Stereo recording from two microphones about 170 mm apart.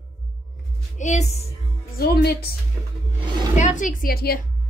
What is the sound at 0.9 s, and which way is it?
Speech, 45° left (ahead or behind).